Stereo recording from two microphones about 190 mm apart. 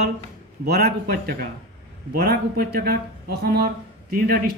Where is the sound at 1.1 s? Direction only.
50° right (ahead or behind).